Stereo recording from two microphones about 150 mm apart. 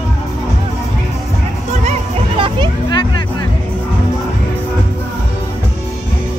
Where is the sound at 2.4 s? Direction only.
35° right (ahead or behind).